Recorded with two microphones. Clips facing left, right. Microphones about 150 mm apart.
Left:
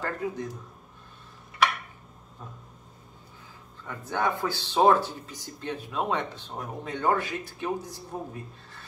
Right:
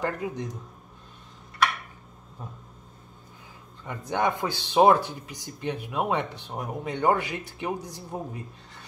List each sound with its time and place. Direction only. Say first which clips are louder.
0.0 s speech: right 2 dB; 15° right (ahead or behind)
4.1 s speech: right 2 dB; 15° right (ahead or behind)